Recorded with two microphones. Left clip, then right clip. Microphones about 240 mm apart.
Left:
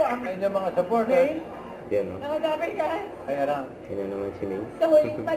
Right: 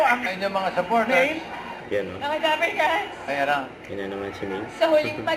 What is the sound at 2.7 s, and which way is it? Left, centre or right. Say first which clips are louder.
Speech: right 5 dB; centre.